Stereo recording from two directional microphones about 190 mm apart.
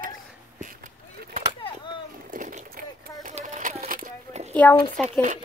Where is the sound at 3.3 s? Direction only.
40° right (ahead or behind).